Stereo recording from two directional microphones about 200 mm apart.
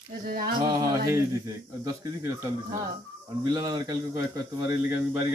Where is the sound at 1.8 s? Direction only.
15° right (ahead or behind).